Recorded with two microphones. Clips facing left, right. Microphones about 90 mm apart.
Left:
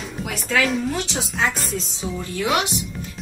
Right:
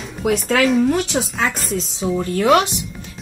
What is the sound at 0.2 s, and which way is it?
Speech, centre (ahead or behind).